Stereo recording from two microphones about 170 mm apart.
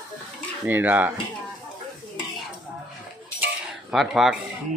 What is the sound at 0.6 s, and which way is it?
Speech, 10° right (ahead or behind).